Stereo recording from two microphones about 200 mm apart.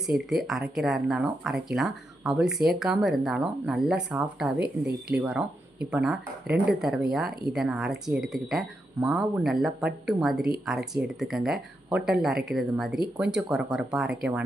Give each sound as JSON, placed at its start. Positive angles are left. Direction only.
{"t": 0.0, "sound": "speech", "side_deg": 0}
{"t": 4.6, "sound": "speech", "side_deg": -55}
{"t": 5.9, "sound": "speech", "side_deg": -5}